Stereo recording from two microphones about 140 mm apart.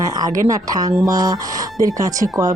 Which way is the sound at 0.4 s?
25° right (ahead or behind).